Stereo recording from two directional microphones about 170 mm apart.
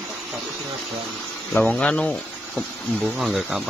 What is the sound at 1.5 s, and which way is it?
Speech, 5° left (ahead or behind).